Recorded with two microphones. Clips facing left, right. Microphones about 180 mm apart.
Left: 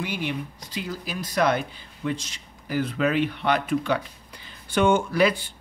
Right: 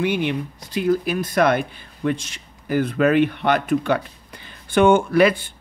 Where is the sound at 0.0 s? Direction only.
60° right (ahead or behind).